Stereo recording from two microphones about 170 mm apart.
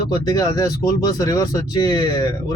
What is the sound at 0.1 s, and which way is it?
Speech, 20° left (ahead or behind).